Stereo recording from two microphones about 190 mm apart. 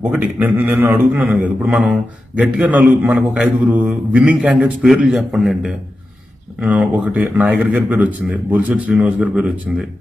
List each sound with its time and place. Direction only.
0.1 s a man's voice: 5° right (ahead or behind)